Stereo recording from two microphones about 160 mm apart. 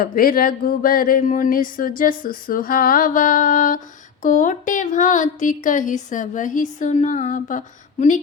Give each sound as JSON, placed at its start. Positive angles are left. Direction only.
{"t": 0.0, "sound": "speech", "side_deg": 60}